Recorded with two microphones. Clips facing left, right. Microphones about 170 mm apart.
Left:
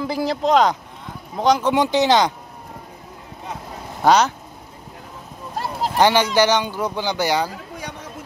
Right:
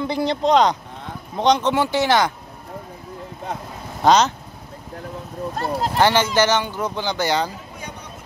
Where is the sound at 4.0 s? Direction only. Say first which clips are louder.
Even; 10° left (ahead or behind).